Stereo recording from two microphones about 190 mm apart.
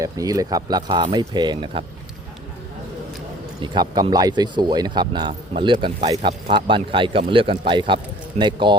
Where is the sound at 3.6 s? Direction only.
25° right (ahead or behind).